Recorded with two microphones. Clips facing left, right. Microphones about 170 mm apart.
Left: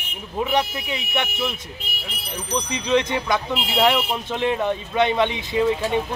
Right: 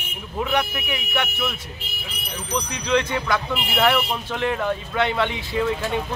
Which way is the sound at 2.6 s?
20° left (ahead or behind).